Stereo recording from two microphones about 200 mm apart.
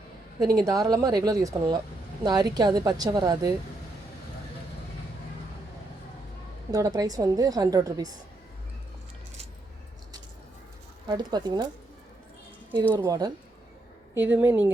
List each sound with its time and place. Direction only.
0.4 s a woman's voice: 20° right (ahead or behind)
6.7 s a woman's voice: 20° right (ahead or behind)
11.1 s a woman's voice: 20° right (ahead or behind)
12.9 s a woman's voice: 20° right (ahead or behind)
14.2 s a woman's voice: 10° right (ahead or behind)